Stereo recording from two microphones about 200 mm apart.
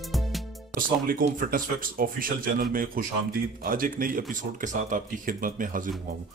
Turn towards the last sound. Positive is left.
turn(degrees=-45)  # may be behind; listen again after turning